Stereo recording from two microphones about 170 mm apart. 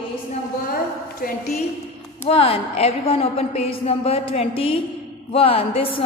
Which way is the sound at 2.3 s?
35° left (ahead or behind).